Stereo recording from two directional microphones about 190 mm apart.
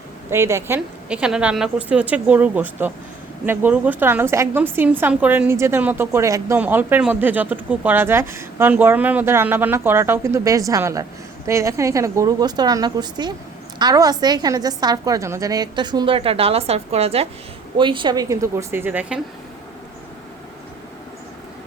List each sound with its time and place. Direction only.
0.3 s a woman's voice: 15° right (ahead or behind)